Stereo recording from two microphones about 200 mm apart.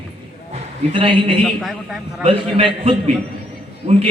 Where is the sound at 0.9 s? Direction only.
25° right (ahead or behind).